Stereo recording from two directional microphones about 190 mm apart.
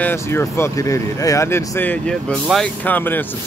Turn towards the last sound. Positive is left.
turn(degrees=5)  # may be behind; listen again after turning